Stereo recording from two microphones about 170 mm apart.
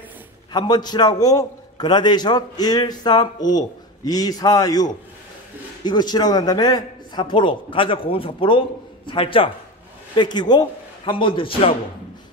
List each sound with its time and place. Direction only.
0.5 s a man's voice: 25° left (ahead or behind)